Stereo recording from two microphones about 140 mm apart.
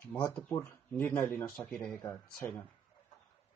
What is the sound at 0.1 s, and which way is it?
Speech, 10° left (ahead or behind).